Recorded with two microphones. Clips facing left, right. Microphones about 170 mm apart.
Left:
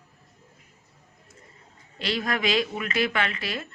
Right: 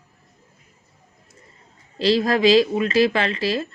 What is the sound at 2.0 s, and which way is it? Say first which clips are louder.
Speech: right 10 dB; 35° right (ahead or behind).